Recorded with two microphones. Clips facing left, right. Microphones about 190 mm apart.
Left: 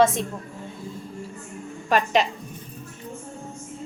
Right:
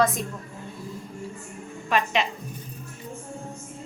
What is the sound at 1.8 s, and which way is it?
Speech, 40° left (ahead or behind).